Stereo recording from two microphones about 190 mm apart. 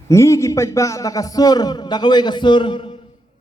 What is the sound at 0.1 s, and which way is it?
A man's voice, 15° left (ahead or behind).